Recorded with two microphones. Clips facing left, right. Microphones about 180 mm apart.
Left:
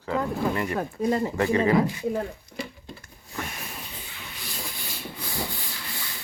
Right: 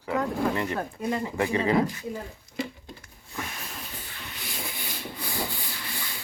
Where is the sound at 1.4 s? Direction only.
20° right (ahead or behind).